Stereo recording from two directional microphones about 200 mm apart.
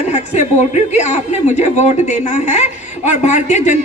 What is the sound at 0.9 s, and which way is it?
A man's voice, 35° left (ahead or behind).